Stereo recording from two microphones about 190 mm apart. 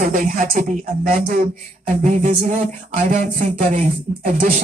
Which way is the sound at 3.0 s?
45° right (ahead or behind).